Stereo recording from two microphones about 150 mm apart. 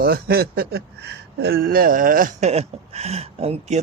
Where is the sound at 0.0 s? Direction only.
90° right; by 2.5 s 65° right (ahead or behind).